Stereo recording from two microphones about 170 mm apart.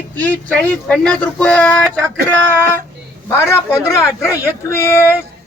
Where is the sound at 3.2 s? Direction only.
15° left (ahead or behind).